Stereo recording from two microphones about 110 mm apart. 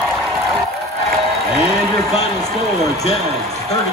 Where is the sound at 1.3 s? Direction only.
Centre (ahead or behind).